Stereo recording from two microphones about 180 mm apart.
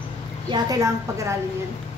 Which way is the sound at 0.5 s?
20° right (ahead or behind).